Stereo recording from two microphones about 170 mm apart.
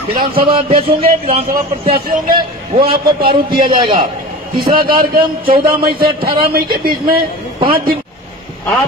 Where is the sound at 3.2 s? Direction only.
60° right (ahead or behind).